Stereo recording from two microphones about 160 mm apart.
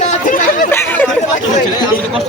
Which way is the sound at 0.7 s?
15° left (ahead or behind).